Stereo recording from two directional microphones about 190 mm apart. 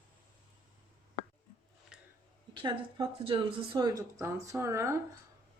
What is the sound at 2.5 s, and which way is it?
Speech, 25° right (ahead or behind).